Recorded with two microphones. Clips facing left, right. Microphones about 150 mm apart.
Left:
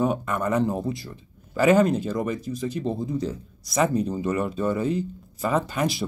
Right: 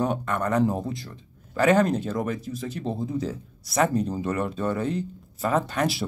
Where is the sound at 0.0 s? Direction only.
5° left (ahead or behind).